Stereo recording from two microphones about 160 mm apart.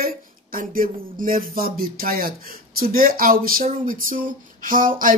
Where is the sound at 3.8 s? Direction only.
60° right (ahead or behind).